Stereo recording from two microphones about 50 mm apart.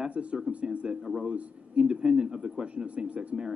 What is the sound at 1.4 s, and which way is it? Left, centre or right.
Speech, right.